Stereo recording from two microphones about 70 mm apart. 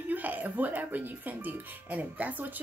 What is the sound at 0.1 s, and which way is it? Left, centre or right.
Speech, right.